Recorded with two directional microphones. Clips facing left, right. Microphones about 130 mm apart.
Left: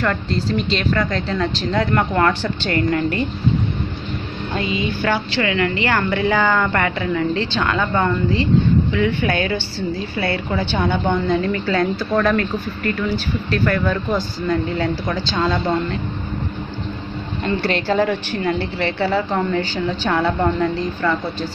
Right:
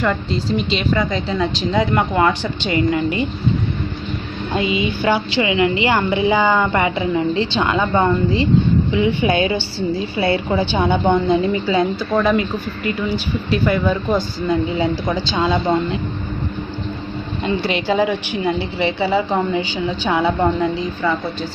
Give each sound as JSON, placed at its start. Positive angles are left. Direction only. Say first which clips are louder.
{"t": 0.0, "sound": "a woman's voice", "louder": "right 1 dB", "side_deg": -10}
{"t": 4.6, "sound": "a woman's voice", "louder": "right 3 dB", "side_deg": -15}
{"t": 17.5, "sound": "a woman's voice", "louder": "even", "side_deg": -10}